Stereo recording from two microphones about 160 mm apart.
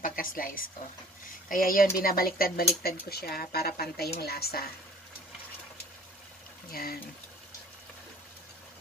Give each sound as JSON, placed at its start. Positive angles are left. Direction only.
{"t": 0.0, "sound": "a woman's voice", "side_deg": 60}
{"t": 6.7, "sound": "speech", "side_deg": 70}